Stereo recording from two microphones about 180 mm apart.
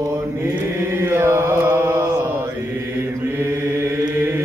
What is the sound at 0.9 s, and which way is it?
Mantra, 15° right (ahead or behind).